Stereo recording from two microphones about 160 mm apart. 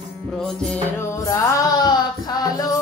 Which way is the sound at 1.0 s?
20° left (ahead or behind).